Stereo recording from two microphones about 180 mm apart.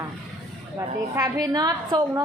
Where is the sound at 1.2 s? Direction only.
20° right (ahead or behind).